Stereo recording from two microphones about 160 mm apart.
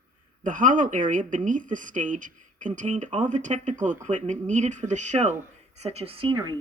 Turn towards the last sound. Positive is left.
turn(degrees=-35)  # may be behind; listen again after turning